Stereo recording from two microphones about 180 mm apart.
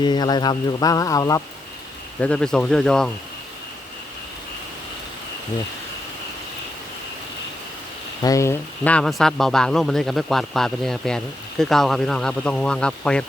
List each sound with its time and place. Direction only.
0.0 s speech: 25° left (ahead or behind)
2.2 s speech: 5° left (ahead or behind)
8.2 s speech: 15° left (ahead or behind)